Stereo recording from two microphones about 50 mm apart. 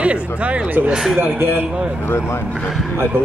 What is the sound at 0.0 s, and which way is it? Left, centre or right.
Speech, right.